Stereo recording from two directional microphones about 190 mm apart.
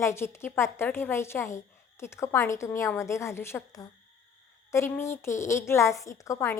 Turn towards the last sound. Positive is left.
turn(degrees=15)  # may be behind; listen again after turning